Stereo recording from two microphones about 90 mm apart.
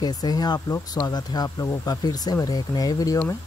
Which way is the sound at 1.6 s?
35° left (ahead or behind).